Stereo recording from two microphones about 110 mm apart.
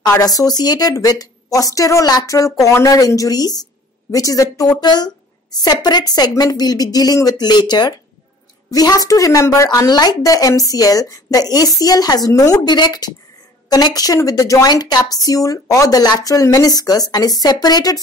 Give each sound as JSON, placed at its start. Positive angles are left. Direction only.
{"t": 0.0, "sound": "a woman's voice", "side_deg": 35}